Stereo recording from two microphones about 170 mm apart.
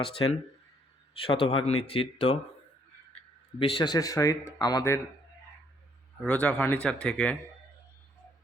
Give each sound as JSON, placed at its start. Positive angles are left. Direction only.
{"t": 0.0, "sound": "speech", "side_deg": 30}
{"t": 3.6, "sound": "speech", "side_deg": 30}
{"t": 6.2, "sound": "speech", "side_deg": 10}